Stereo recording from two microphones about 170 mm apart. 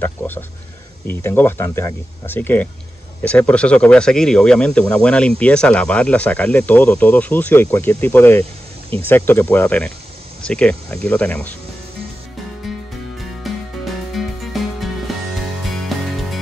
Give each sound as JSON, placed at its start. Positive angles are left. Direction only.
{"t": 0.0, "sound": "a sound", "side_deg": 10}
{"t": 1.0, "sound": "speech", "side_deg": 15}
{"t": 13.5, "sound": "music", "side_deg": 0}